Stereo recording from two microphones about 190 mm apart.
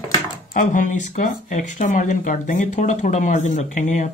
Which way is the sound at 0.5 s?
45° left (ahead or behind).